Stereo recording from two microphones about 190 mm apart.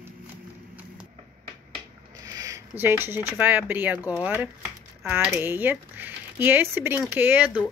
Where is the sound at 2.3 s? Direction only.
20° right (ahead or behind).